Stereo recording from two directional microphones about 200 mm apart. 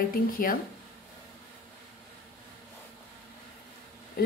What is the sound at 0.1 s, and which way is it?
Speech, 45° left (ahead or behind).